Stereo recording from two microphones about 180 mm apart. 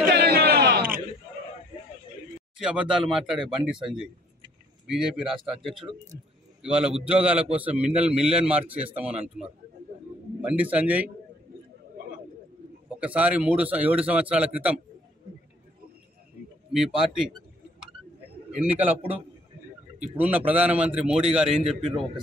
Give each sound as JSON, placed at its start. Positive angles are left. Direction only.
{"t": 0.1, "sound": "a sound", "side_deg": -60}
{"t": 2.6, "sound": "speech", "side_deg": -5}
{"t": 7.1, "sound": "a man's voice", "side_deg": -5}
{"t": 8.6, "sound": "a man's voice", "side_deg": -30}
{"t": 8.9, "sound": "a man's voice", "side_deg": -5}
{"t": 13.0, "sound": "a man's voice", "side_deg": -5}
{"t": 16.7, "sound": "speech", "side_deg": -5}
{"t": 18.6, "sound": "a man's voice", "side_deg": -10}